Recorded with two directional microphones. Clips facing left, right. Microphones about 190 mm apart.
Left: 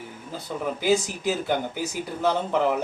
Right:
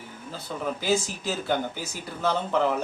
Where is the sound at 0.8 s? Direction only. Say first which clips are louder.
Left 5 dB; 15° left (ahead or behind).